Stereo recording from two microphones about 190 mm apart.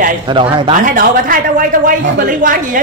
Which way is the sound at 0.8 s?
45° right (ahead or behind).